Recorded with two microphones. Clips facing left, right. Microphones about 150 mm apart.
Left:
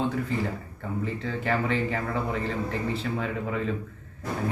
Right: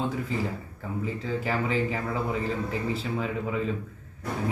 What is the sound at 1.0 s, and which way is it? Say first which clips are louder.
Speech: even; 5° right (ahead or behind).